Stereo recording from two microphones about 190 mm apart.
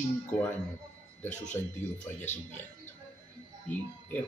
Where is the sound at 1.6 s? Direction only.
15° left (ahead or behind).